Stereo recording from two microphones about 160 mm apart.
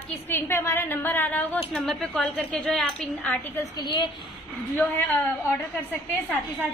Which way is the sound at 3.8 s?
30° left (ahead or behind).